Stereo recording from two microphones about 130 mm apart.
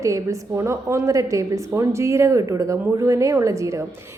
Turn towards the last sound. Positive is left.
turn(degrees=-25)  # may be behind; listen again after turning